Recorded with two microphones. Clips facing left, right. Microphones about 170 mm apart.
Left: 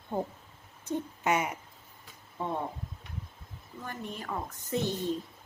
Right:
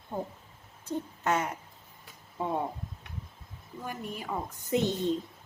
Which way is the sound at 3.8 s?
10° right (ahead or behind).